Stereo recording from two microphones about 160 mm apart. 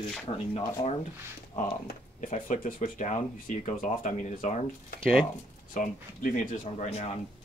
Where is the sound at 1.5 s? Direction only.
50° left (ahead or behind).